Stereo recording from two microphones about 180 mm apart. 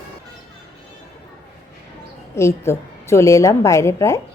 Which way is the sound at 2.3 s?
15° left (ahead or behind).